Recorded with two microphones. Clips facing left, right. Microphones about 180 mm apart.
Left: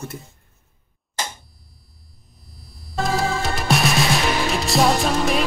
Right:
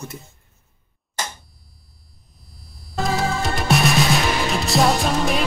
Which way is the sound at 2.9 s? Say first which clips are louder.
Even; centre (ahead or behind).